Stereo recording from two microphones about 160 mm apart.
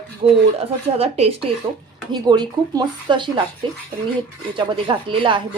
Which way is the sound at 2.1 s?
25° right (ahead or behind).